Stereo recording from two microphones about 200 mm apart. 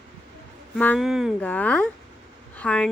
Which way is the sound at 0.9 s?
Centre (ahead or behind).